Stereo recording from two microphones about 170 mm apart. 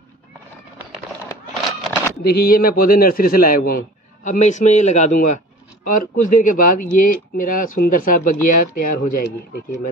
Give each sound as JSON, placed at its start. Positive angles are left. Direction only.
{"t": 2.2, "sound": "a man's voice", "side_deg": 60}